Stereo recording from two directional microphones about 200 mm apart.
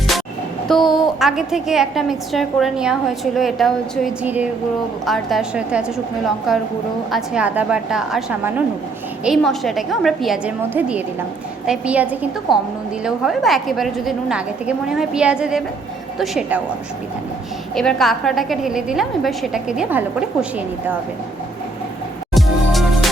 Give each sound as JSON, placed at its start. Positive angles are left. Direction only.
{"t": 0.7, "sound": "a woman's voice", "side_deg": 0}
{"t": 17.7, "sound": "a woman's voice", "side_deg": 0}
{"t": 22.4, "sound": "music", "side_deg": 0}